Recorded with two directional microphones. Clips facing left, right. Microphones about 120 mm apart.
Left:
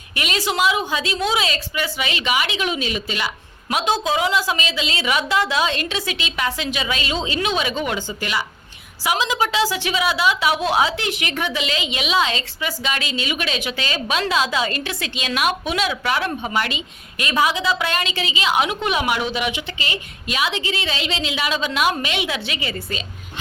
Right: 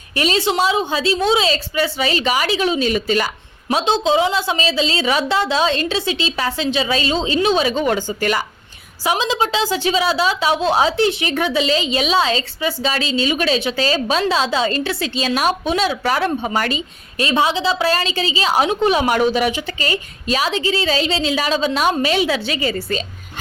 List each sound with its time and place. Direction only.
0.1 s a woman's voice: 30° right (ahead or behind)
3.8 s a woman's voice: 25° right (ahead or behind); by 8.4 s 45° right (ahead or behind)
9.0 s a woman's voice: 30° right (ahead or behind)